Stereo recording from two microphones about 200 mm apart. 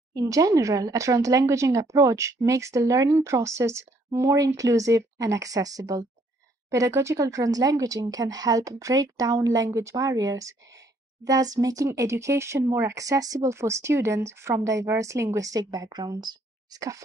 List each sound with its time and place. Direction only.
0.1 s speech: 20° right (ahead or behind)